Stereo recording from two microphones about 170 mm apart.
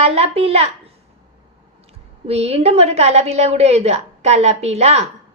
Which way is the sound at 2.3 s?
40° right (ahead or behind).